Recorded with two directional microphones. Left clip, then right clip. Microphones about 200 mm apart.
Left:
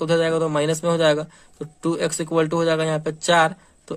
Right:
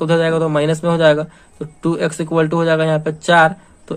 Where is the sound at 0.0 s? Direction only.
20° left (ahead or behind).